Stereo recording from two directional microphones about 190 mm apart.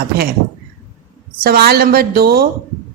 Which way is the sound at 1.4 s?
55° right (ahead or behind).